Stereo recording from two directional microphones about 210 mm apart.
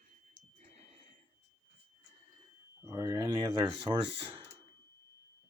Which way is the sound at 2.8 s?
15° right (ahead or behind).